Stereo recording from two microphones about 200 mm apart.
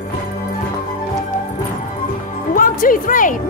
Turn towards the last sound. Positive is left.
turn(degrees=40)  # may be behind; listen again after turning